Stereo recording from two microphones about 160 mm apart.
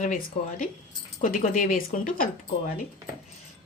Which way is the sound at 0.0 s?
55° left (ahead or behind).